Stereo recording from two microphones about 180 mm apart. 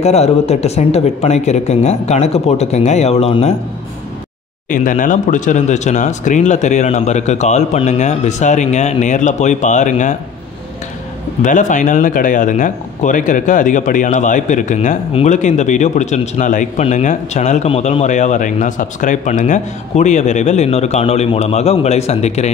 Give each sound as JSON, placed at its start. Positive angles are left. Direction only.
{"t": 0.0, "sound": "speech", "side_deg": 35}
{"t": 4.6, "sound": "speech", "side_deg": 45}
{"t": 11.4, "sound": "speech", "side_deg": 45}